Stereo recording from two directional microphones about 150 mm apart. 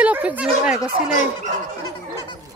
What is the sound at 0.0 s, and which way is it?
Speech, 10° right (ahead or behind).